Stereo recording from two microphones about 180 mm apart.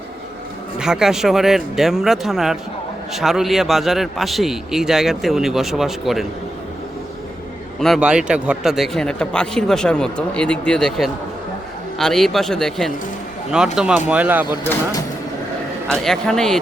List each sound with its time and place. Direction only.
0.8 s speech: 5° right (ahead or behind)
7.8 s speech: centre (ahead or behind)
14.5 s speech: 15° left (ahead or behind)
15.9 s speech: 5° left (ahead or behind)